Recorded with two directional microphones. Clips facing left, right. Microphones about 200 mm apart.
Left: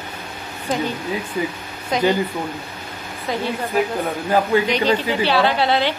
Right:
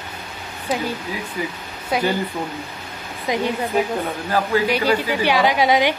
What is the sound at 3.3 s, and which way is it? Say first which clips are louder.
Speech: right 2 dB; 15° right (ahead or behind).